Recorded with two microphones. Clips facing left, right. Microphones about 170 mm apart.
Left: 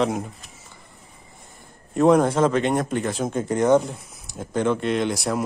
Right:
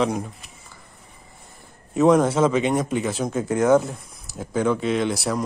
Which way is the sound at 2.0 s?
Centre (ahead or behind).